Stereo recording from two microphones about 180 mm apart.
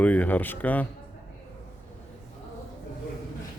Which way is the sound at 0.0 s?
10° left (ahead or behind).